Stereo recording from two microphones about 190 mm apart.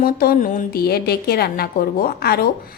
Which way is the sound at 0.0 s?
50° left (ahead or behind).